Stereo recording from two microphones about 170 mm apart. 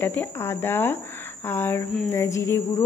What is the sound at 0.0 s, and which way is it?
Speech, 10° left (ahead or behind).